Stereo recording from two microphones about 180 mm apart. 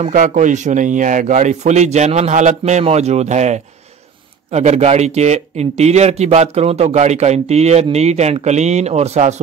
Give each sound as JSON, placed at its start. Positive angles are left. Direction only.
{"t": 0.0, "sound": "speech", "side_deg": -45}